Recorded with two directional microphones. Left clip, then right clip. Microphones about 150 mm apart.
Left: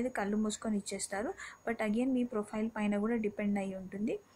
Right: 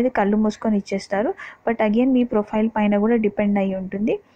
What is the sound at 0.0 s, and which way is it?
Speech, 35° right (ahead or behind).